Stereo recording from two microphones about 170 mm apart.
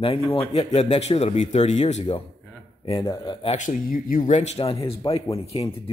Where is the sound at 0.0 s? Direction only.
35° left (ahead or behind).